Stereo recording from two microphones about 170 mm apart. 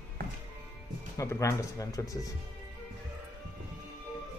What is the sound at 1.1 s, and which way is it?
Speech, 15° left (ahead or behind).